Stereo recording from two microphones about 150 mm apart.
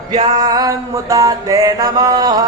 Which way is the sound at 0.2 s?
25° right (ahead or behind).